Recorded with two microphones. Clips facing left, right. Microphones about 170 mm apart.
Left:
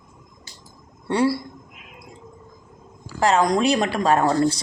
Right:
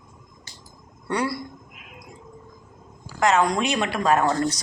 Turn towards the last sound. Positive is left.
turn(degrees=25)  # may be behind; listen again after turning